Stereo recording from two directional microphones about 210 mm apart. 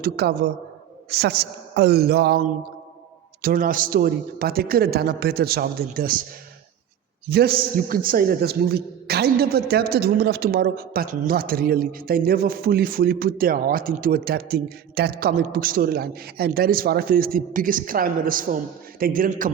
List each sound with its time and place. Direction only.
0.0 s a man's voice: 50° right (ahead or behind)
3.4 s a man's voice: 40° right (ahead or behind)
7.3 s a man's voice: 45° right (ahead or behind)